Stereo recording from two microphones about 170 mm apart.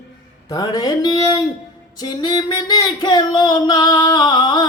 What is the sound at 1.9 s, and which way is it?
Singing, 25° left (ahead or behind).